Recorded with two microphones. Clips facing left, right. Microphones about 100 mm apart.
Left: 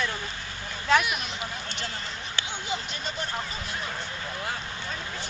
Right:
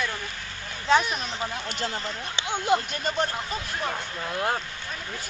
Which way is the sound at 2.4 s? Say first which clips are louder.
Right 13 dB; 55° right (ahead or behind).